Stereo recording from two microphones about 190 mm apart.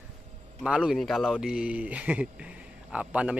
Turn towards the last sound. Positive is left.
turn(degrees=-5)  # may be behind; listen again after turning